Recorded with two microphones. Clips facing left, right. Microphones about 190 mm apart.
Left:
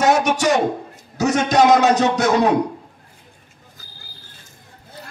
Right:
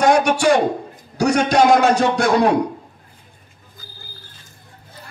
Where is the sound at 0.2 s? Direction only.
20° left (ahead or behind).